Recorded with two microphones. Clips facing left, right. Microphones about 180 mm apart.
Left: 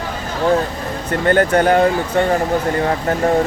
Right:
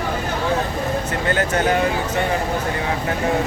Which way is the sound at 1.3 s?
55° left (ahead or behind).